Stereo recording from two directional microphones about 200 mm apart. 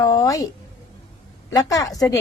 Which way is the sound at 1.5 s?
20° left (ahead or behind).